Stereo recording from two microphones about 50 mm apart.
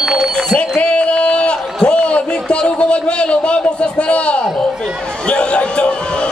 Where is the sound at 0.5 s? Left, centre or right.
Left.